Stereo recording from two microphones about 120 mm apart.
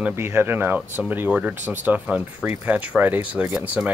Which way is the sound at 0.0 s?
20° right (ahead or behind).